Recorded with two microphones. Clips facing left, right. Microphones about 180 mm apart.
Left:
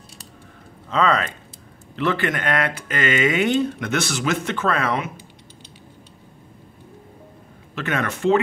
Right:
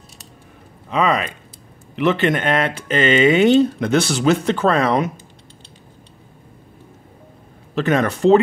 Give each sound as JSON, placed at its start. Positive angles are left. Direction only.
{"t": 0.8, "sound": "speech", "side_deg": -15}
{"t": 7.7, "sound": "speech", "side_deg": -35}